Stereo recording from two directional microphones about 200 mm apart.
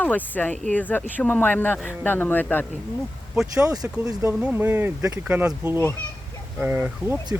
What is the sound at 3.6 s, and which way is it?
Speech, 20° right (ahead or behind).